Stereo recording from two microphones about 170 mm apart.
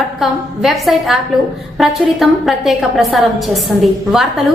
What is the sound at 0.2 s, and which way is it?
A man's voice, centre (ahead or behind).